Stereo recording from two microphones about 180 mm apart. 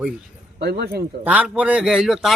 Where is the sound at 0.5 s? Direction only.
65° right (ahead or behind).